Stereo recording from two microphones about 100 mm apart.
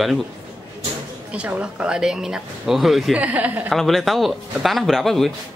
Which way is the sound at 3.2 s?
15° right (ahead or behind).